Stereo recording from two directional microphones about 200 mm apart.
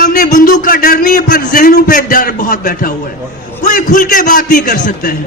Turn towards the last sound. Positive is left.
turn(degrees=45)  # may be behind; listen again after turning